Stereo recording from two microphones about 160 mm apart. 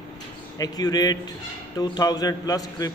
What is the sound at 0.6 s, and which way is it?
A man's voice, 25° left (ahead or behind).